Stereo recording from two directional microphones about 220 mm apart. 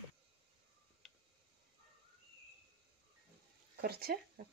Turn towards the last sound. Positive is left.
turn(degrees=-45)  # may be behind; listen again after turning